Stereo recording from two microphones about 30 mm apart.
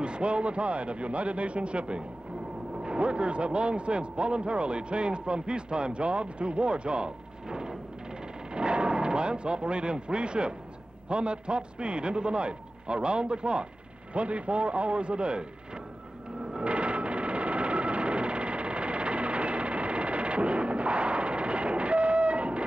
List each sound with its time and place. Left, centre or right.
0.0 s a man's voice: right
14.1 s a man's voice: right
16.6 s a sound: right